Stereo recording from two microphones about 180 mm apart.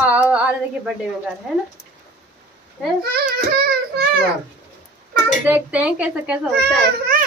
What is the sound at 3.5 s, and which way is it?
Child singing, 60° right (ahead or behind).